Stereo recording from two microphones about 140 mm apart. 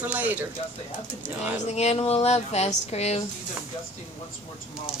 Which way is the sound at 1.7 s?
50° left (ahead or behind).